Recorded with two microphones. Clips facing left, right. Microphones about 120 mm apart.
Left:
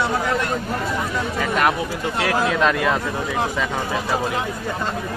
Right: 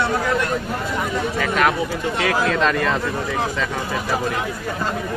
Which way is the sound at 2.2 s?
5° left (ahead or behind).